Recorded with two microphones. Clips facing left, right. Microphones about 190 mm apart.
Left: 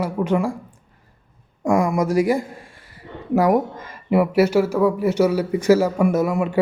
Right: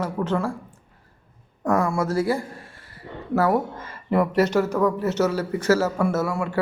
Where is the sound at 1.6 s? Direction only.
15° left (ahead or behind).